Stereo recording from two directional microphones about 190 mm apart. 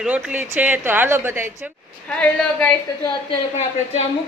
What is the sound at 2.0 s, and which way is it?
Speech, 5° left (ahead or behind).